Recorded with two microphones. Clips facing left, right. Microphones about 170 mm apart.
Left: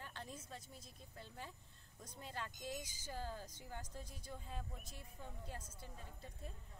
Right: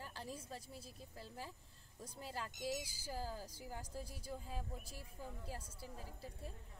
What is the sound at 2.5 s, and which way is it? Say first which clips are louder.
Speech: right 5 dB; 90° right.